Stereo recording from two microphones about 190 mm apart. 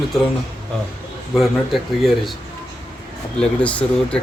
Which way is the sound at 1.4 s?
Centre (ahead or behind).